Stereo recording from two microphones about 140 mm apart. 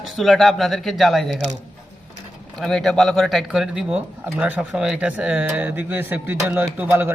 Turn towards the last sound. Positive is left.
turn(degrees=-15)  # may be behind; listen again after turning